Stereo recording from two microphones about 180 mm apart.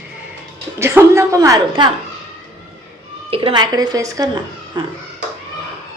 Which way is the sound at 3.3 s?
25° right (ahead or behind).